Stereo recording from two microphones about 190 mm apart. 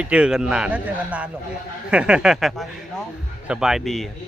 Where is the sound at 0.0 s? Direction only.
5° right (ahead or behind).